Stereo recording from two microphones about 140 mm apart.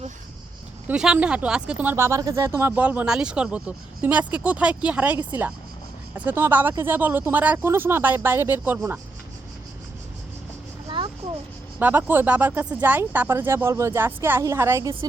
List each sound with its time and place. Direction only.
0.9 s speech: 5° right (ahead or behind)
10.8 s a sound: 35° right (ahead or behind)
11.8 s speech: 15° right (ahead or behind)